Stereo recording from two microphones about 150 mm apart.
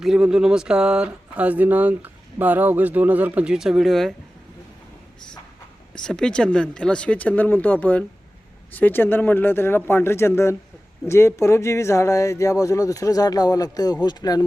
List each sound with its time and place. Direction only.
0.0 s speech: 5° right (ahead or behind)
5.9 s speech: 5° left (ahead or behind); by 14.4 s 25° left (ahead or behind)